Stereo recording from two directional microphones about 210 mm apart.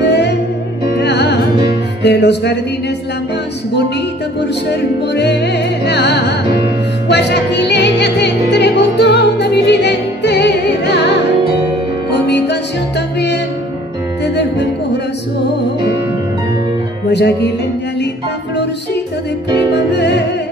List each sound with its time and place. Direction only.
0.0 s music: 55° left (ahead or behind)
4.6 s music: 55° left (ahead or behind)
14.2 s music: 55° left (ahead or behind)
19.7 s music: 55° left (ahead or behind)